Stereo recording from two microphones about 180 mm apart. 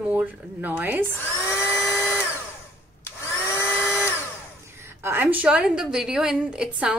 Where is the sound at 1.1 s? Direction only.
15° left (ahead or behind).